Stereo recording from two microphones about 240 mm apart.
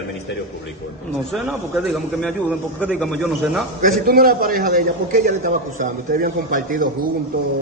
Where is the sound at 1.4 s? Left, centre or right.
Centre.